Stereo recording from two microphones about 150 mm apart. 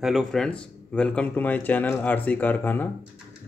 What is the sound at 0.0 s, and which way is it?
Speech, centre (ahead or behind).